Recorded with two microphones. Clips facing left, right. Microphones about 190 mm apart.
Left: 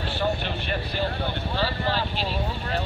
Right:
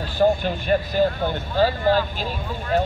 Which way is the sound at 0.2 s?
45° right (ahead or behind).